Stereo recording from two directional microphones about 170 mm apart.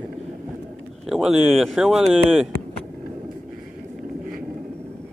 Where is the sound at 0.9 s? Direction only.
Centre (ahead or behind).